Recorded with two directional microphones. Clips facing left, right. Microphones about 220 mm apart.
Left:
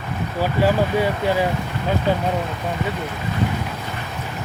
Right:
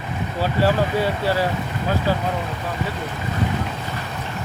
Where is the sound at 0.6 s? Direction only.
15° left (ahead or behind).